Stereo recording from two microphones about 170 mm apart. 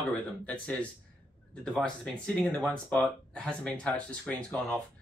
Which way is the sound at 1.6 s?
5° left (ahead or behind).